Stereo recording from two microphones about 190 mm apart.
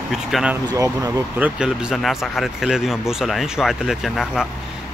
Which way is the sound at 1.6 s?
Centre (ahead or behind).